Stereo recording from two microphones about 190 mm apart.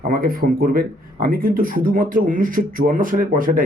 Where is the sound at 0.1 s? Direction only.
50° right (ahead or behind).